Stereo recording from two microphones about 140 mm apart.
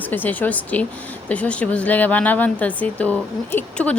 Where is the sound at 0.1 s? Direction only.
15° left (ahead or behind).